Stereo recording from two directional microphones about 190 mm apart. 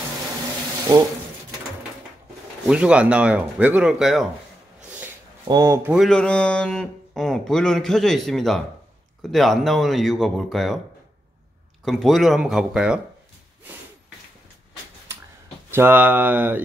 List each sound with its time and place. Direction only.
0.9 s speech: 20° right (ahead or behind)
2.6 s speech: 5° right (ahead or behind)
5.5 s speech: 20° right (ahead or behind)
5.8 s speech: 5° right (ahead or behind)
11.8 s speech: centre (ahead or behind)
15.7 s speech: 10° right (ahead or behind)